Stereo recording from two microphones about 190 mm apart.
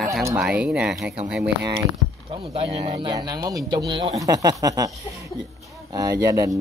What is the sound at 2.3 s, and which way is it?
Speech, 30° right (ahead or behind).